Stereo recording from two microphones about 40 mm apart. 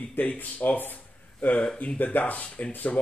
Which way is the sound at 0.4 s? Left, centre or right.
Left.